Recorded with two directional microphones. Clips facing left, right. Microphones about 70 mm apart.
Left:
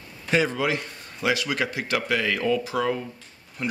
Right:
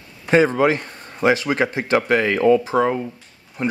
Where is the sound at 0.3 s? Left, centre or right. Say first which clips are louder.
Right 8 dB; right.